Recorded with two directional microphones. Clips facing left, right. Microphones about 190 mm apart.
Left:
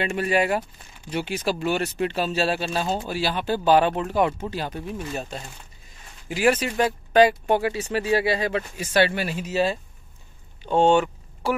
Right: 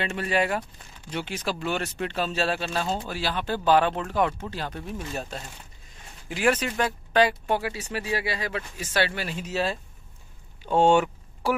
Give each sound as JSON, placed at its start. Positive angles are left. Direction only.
{"t": 0.0, "sound": "speech", "side_deg": 10}
{"t": 8.7, "sound": "speech", "side_deg": 15}
{"t": 9.4, "sound": "speech", "side_deg": 0}
{"t": 10.6, "sound": "vehicle", "side_deg": -5}